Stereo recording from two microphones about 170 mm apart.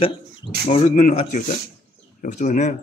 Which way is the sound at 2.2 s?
45° left (ahead or behind).